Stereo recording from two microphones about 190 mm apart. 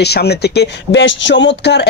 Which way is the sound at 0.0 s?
60° left (ahead or behind).